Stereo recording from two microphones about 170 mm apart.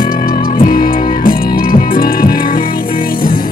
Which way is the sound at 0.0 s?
55° left (ahead or behind).